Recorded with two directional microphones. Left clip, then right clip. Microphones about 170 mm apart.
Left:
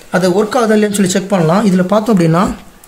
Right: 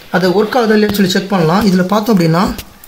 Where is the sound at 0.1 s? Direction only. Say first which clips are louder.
Even; 10° left (ahead or behind).